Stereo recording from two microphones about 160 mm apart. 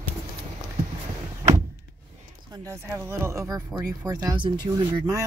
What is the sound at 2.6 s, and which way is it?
Speech, 15° right (ahead or behind).